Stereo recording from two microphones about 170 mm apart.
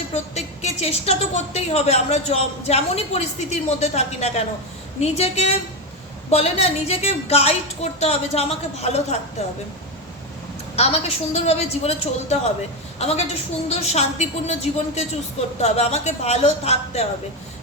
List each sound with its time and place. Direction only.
0.1 s a woman's voice: 40° left (ahead or behind)
10.8 s a woman's voice: 40° left (ahead or behind)